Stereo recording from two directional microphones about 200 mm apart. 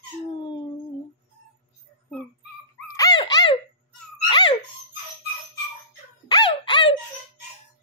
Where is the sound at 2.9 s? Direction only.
20° left (ahead or behind).